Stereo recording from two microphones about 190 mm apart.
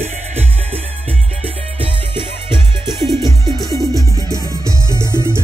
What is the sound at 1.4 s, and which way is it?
Music, 25° right (ahead or behind).